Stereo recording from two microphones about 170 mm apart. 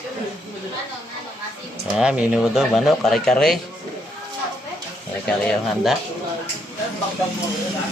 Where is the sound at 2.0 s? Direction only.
5° right (ahead or behind).